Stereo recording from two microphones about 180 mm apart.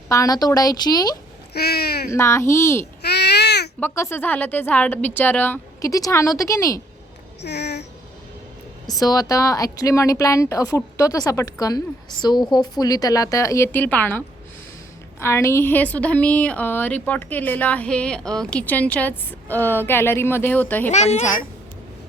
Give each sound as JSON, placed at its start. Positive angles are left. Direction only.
{"t": 0.1, "sound": "speech", "side_deg": 20}
{"t": 1.5, "sound": "speech", "side_deg": 60}
{"t": 2.1, "sound": "a woman's voice", "side_deg": 15}
{"t": 3.0, "sound": "babbling", "side_deg": 65}
{"t": 3.8, "sound": "a woman's voice", "side_deg": 15}
{"t": 7.4, "sound": "speech", "side_deg": 70}
{"t": 8.9, "sound": "a woman's voice", "side_deg": 20}
{"t": 20.9, "sound": "a child's voice", "side_deg": 40}